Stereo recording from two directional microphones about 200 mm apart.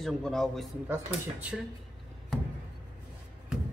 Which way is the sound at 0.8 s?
10° right (ahead or behind).